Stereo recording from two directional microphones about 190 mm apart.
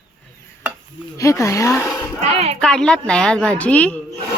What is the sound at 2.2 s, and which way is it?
Speech, 35° right (ahead or behind).